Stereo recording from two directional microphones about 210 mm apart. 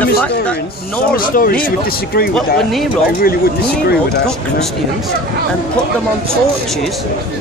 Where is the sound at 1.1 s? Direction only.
45° left (ahead or behind).